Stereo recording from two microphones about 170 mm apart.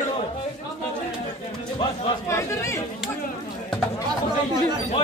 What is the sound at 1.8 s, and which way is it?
A man's voice, 20° left (ahead or behind).